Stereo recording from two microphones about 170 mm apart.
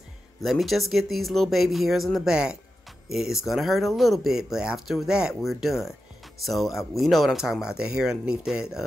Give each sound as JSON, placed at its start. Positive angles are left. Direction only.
{"t": 0.4, "sound": "speech", "side_deg": 0}